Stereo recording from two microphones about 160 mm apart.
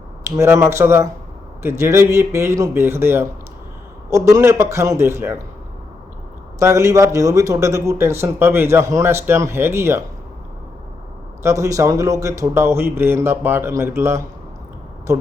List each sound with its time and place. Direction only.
0.3 s a man's voice: 15° right (ahead or behind)
6.6 s a man's voice: 20° right (ahead or behind)
11.4 s a man's voice: 20° right (ahead or behind)